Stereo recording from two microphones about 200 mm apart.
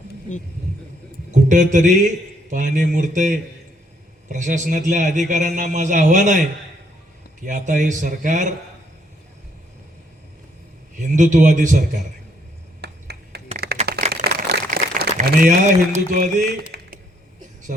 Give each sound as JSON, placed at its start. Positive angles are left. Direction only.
{"t": 1.3, "sound": "a man's voice", "side_deg": -40}
{"t": 7.4, "sound": "a man's voice", "side_deg": -40}
{"t": 10.9, "sound": "a man's voice", "side_deg": -40}
{"t": 12.8, "sound": "finger snapping", "side_deg": -55}
{"t": 13.8, "sound": "a sound", "side_deg": -30}
{"t": 14.3, "sound": "crumpling", "side_deg": -50}
{"t": 16.7, "sound": "a sound", "side_deg": -50}